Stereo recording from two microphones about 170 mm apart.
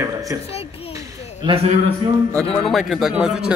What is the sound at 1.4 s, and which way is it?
Speech, 35° right (ahead or behind).